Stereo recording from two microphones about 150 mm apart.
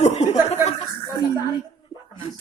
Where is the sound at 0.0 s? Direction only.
50° left (ahead or behind).